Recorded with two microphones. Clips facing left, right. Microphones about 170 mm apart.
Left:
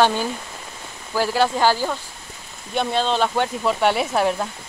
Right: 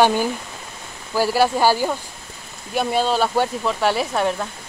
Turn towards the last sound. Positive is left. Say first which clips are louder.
# left 1 dB
turn(degrees=5)  # may be behind; listen again after turning